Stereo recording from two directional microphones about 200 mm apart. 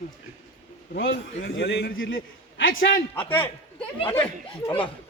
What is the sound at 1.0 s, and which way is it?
Speech, 70° left (ahead or behind).